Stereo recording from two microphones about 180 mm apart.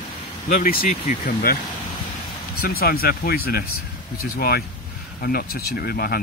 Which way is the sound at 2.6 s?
55° left (ahead or behind).